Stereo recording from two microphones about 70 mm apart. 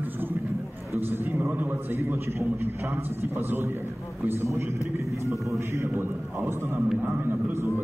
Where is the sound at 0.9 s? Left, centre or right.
Right.